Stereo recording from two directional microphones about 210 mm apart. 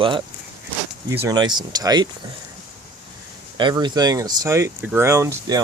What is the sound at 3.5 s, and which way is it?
Speech, 20° right (ahead or behind).